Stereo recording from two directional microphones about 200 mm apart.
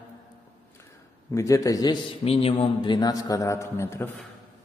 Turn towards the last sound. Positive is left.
turn(degrees=10)  # may be behind; listen again after turning